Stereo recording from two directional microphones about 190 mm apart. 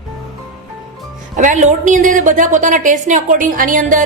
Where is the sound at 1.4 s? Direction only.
40° right (ahead or behind).